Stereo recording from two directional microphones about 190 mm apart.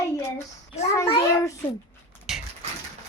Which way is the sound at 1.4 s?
15° left (ahead or behind).